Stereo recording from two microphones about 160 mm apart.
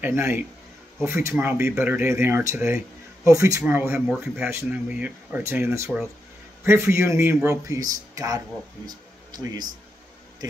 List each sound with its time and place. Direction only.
0.0 s a man's voice: 15° right (ahead or behind)
8.8 s music: 25° right (ahead or behind)